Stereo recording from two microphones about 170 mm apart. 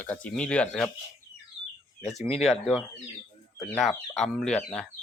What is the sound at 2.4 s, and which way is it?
Speech, centre (ahead or behind).